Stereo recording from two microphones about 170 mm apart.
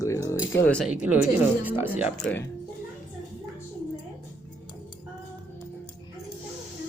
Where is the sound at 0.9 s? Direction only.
10° right (ahead or behind).